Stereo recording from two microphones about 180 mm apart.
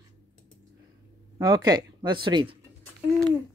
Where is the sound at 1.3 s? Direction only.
25° right (ahead or behind).